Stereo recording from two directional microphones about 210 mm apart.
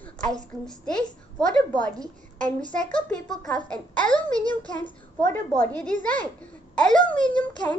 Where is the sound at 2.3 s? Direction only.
35° right (ahead or behind).